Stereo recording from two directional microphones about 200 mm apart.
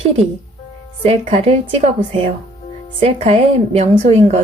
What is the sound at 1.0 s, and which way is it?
Speech, 30° right (ahead or behind).